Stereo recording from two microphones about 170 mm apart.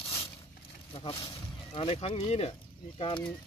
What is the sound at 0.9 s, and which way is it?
Speech, 35° left (ahead or behind).